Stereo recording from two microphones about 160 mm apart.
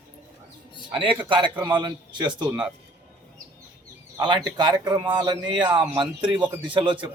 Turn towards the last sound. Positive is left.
turn(degrees=-30)  # may be behind; listen again after turning